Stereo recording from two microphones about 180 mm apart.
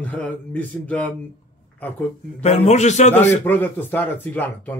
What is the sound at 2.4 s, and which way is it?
Speech, 35° left (ahead or behind).